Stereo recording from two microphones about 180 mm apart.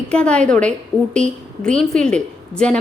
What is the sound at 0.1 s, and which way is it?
A woman's voice, 5° left (ahead or behind).